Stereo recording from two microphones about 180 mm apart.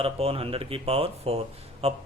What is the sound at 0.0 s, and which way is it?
Speech, 35° right (ahead or behind).